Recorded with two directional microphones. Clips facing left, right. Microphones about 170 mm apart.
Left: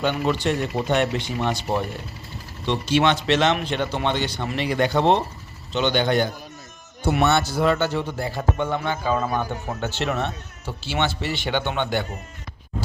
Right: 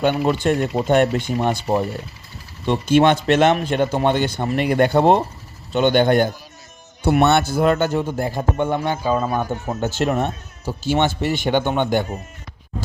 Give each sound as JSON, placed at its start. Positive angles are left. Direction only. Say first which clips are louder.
{"t": 0.0, "sound": "a man's voice", "louder": "right 4 dB", "side_deg": -50}
{"t": 2.6, "sound": "a man's voice", "louder": "right 5 dB", "side_deg": -50}
{"t": 9.0, "sound": "a man's voice", "louder": "right 3 dB", "side_deg": -15}
{"t": 9.9, "sound": "a man's voice", "louder": "right 5 dB", "side_deg": -45}